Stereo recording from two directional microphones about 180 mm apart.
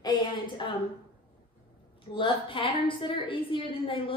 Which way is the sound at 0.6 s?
25° left (ahead or behind).